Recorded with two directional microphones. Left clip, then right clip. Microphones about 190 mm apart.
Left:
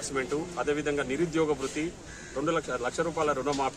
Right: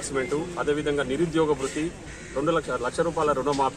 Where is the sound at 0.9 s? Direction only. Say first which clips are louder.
Right 4 dB; centre (ahead or behind).